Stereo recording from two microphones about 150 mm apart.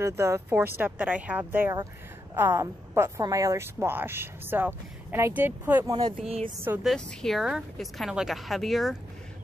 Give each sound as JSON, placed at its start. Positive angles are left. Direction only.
{"t": 0.0, "sound": "a woman's voice", "side_deg": -20}
{"t": 5.9, "sound": "speech", "side_deg": -25}
{"t": 6.8, "sound": "speech", "side_deg": 0}